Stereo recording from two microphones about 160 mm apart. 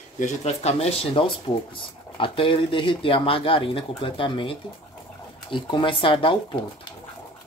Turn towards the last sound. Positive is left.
turn(degrees=35)  # may be behind; listen again after turning